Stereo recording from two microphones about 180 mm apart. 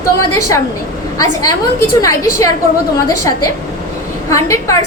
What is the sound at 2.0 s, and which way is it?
A woman's voice, 20° left (ahead or behind).